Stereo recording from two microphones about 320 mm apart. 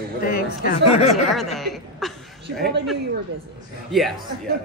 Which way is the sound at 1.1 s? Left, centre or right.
Centre.